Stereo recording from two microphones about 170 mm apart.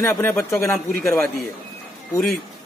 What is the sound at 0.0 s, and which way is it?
A man's voice, 15° left (ahead or behind).